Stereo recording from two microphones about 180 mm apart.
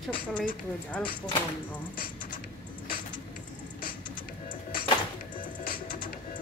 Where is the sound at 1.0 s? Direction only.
5° left (ahead or behind).